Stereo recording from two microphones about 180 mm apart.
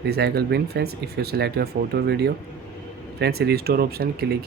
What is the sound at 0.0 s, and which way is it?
Speech, 60° right (ahead or behind).